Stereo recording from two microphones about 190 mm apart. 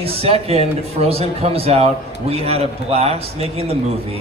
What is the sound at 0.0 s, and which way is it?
Speech, 30° right (ahead or behind).